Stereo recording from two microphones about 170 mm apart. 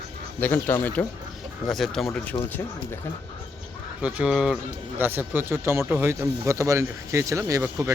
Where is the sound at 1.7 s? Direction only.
Centre (ahead or behind).